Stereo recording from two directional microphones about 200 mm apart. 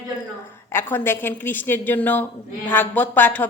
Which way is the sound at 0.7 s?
10° left (ahead or behind).